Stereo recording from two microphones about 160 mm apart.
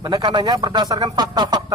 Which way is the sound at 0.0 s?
25° right (ahead or behind).